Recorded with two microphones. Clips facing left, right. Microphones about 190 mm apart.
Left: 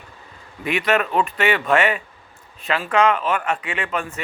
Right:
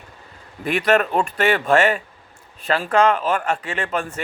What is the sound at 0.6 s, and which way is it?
Speech, 40° right (ahead or behind).